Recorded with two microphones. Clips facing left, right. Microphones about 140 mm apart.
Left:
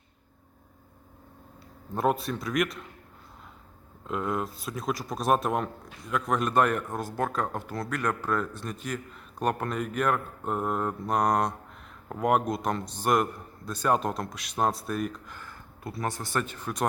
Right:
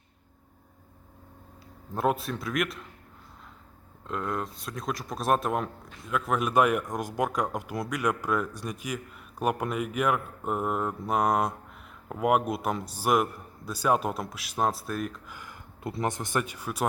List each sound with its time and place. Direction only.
1.9 s speech: centre (ahead or behind)
4.0 s speech: 5° left (ahead or behind)
15.4 s a man's voice: 20° right (ahead or behind)